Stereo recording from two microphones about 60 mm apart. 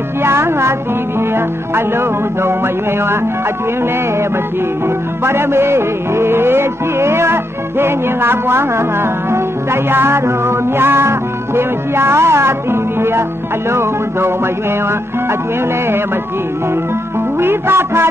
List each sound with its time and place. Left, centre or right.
0.2 s music: right
4.8 s music: right
17.4 s music: right